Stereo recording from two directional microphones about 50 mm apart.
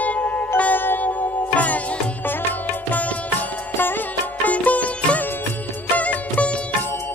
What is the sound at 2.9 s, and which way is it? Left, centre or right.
Music, left.